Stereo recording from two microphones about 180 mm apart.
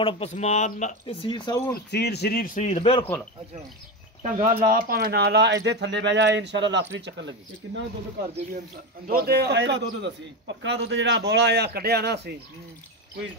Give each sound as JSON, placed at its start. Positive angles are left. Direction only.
{"t": 0.0, "sound": "speech", "side_deg": 35}
{"t": 1.0, "sound": "speech", "side_deg": 30}
{"t": 1.9, "sound": "speech", "side_deg": 65}
{"t": 4.2, "sound": "speech", "side_deg": -45}
{"t": 9.0, "sound": "speech", "side_deg": -55}